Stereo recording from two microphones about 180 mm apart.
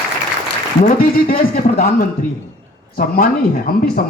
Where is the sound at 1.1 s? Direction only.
55° left (ahead or behind).